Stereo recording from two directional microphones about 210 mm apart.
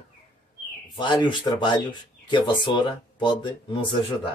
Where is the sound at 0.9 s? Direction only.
20° left (ahead or behind).